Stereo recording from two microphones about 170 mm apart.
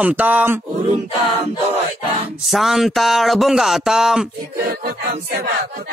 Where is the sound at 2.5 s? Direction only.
Centre (ahead or behind).